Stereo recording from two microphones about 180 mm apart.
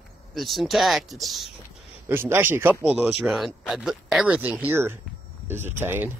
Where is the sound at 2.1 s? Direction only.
10° right (ahead or behind).